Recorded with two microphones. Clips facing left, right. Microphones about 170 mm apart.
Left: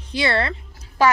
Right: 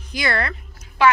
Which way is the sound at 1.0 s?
40° left (ahead or behind).